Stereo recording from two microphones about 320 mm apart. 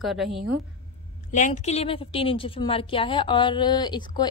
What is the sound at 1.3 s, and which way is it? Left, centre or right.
A woman's voice, left.